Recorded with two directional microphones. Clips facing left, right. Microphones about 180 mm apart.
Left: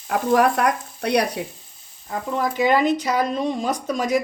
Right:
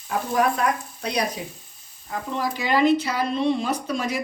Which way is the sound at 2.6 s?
50° left (ahead or behind).